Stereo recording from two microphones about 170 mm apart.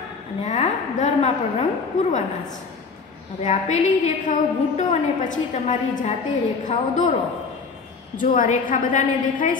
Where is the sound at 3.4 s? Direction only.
45° left (ahead or behind).